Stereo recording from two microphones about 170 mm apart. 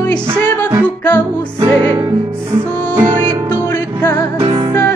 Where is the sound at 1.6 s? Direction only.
25° right (ahead or behind).